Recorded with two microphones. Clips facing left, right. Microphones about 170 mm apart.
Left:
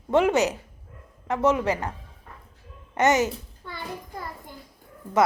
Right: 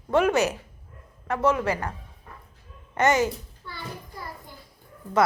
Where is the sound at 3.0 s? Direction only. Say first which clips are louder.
Left 1 dB; 20° left (ahead or behind).